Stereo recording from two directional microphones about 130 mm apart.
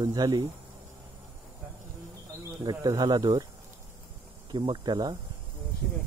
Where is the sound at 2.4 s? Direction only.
30° right (ahead or behind).